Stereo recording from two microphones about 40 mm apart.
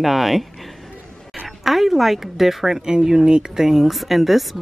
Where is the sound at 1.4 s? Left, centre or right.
Centre.